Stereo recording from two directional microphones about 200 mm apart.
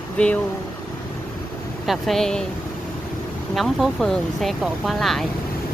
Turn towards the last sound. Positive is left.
turn(degrees=0)  # may be behind; listen again after turning